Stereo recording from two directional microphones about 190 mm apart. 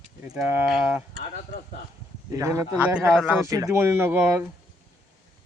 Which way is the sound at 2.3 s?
15° right (ahead or behind).